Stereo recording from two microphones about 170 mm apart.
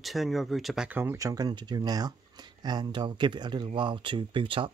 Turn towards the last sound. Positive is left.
turn(degrees=-30)  # may be behind; listen again after turning